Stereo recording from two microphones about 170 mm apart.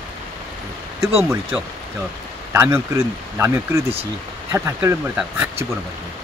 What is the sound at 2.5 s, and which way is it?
Speech, 15° right (ahead or behind).